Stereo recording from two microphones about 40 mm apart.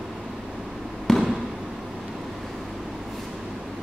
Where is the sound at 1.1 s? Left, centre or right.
Centre.